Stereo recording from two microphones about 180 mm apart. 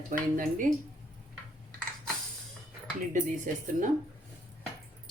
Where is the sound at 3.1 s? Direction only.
45° right (ahead or behind).